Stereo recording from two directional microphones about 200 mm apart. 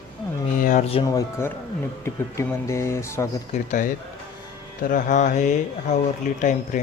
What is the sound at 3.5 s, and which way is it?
Speech, 40° left (ahead or behind).